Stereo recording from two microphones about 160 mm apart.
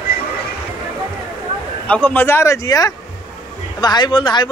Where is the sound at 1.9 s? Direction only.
10° left (ahead or behind).